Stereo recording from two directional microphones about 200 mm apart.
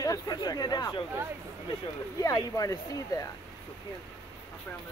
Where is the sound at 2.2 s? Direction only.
15° left (ahead or behind).